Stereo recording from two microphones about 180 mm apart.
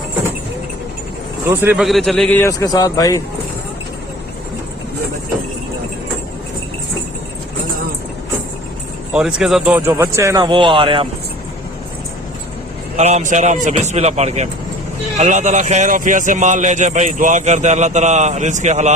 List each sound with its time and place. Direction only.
1.5 s a man's voice: 10° right (ahead or behind)
1.8 s a man's voice: centre (ahead or behind); by 3.2 s 20° left (ahead or behind)
9.1 s a man's voice: 5° right (ahead or behind); by 11.1 s 30° right (ahead or behind)
13.0 s a man's voice: 40° right (ahead or behind)